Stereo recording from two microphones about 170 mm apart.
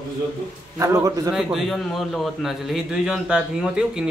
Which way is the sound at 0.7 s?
15° right (ahead or behind).